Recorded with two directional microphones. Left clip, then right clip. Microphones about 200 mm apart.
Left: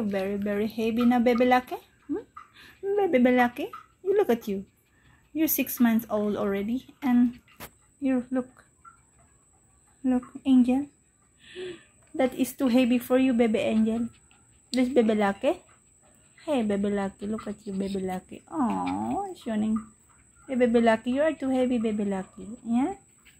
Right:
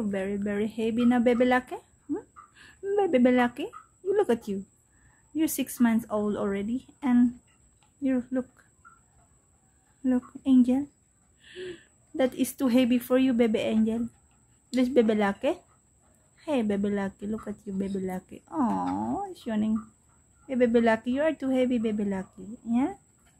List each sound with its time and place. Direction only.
0.1 s a woman's voice: 10° right (ahead or behind)
10.0 s a woman's voice: 10° right (ahead or behind)
17.6 s speech: 20° right (ahead or behind)
18.0 s a woman's voice: 10° right (ahead or behind)